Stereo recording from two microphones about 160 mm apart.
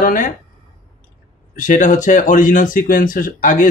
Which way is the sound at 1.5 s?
55° left (ahead or behind).